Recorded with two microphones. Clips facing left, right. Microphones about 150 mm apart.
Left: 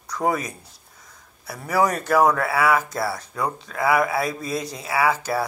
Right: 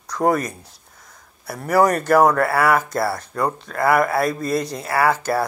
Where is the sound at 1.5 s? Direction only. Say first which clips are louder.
Right 5 dB; 55° right (ahead or behind).